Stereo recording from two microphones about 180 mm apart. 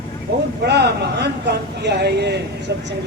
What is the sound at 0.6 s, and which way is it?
A man's voice, 70° right (ahead or behind).